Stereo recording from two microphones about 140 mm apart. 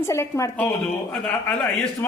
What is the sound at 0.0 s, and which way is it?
A man's voice, 20° left (ahead or behind).